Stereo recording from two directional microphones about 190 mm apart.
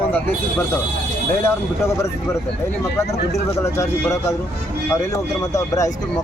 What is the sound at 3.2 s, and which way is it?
Speech, 60° left (ahead or behind).